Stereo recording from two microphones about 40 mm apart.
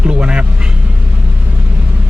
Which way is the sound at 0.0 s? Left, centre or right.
Right.